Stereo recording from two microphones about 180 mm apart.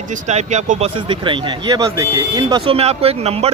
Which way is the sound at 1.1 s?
25° right (ahead or behind).